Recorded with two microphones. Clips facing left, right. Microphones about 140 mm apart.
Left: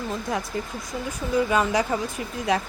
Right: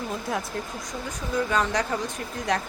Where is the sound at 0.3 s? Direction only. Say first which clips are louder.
Left 2 dB; centre (ahead or behind).